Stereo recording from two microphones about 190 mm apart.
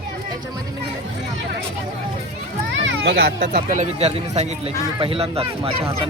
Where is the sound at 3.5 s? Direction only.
40° right (ahead or behind).